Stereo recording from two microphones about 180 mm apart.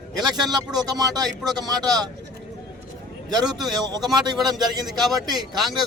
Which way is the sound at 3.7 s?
20° right (ahead or behind).